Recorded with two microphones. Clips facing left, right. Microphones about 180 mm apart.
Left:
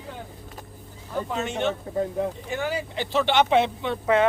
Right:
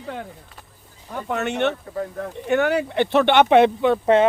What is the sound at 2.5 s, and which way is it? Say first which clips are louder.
Speech: right 9 dB; 65° right (ahead or behind).